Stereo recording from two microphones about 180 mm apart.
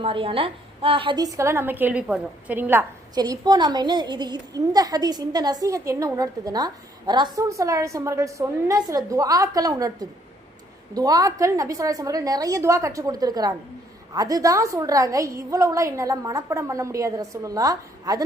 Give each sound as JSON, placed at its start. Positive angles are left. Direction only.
{"t": 0.0, "sound": "a woman's voice", "side_deg": -30}
{"t": 3.2, "sound": "a woman's voice", "side_deg": -20}